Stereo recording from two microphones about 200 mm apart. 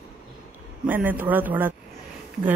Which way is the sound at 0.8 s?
10° right (ahead or behind).